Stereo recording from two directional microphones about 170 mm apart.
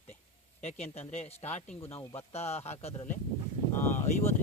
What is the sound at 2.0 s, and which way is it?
Speech, 15° left (ahead or behind).